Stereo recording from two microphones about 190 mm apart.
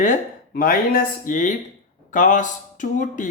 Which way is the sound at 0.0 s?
45° left (ahead or behind).